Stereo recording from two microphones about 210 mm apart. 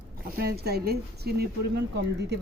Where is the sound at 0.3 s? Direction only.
50° right (ahead or behind).